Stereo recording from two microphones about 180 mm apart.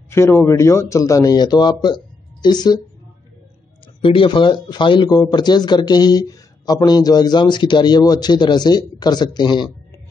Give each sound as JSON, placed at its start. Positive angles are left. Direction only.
{"t": 0.1, "sound": "a man's voice", "side_deg": 15}
{"t": 4.0, "sound": "speech", "side_deg": 30}